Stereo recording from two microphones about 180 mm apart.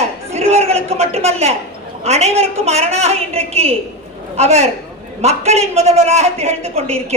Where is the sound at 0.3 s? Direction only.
35° right (ahead or behind).